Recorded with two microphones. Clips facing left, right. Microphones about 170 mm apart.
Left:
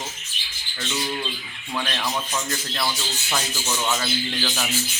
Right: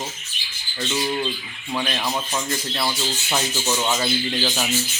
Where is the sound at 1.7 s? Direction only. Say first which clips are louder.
Right 2 dB; 15° right (ahead or behind).